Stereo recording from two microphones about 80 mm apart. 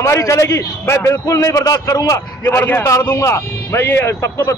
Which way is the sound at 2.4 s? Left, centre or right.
Left.